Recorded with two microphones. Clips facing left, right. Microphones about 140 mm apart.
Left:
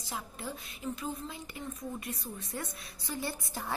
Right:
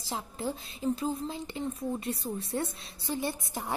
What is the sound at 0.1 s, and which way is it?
A woman's voice, 30° right (ahead or behind).